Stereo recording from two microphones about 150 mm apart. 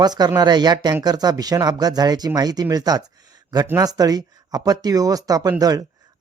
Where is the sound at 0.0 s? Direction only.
25° right (ahead or behind).